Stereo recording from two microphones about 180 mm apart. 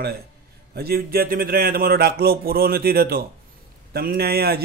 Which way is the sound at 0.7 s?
60° right (ahead or behind).